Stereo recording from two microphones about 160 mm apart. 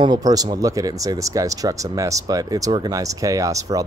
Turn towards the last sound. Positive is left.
turn(degrees=-20)  # may be behind; listen again after turning